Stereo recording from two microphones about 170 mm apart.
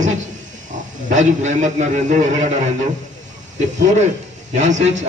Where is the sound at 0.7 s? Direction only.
45° right (ahead or behind).